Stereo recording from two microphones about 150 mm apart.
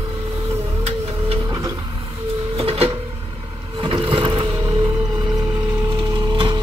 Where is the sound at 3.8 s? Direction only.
35° right (ahead or behind).